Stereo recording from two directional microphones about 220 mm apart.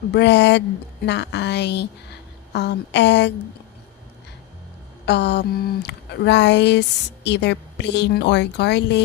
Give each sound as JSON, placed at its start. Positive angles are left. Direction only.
{"t": 0.1, "sound": "speech", "side_deg": 50}
{"t": 5.0, "sound": "speech", "side_deg": 50}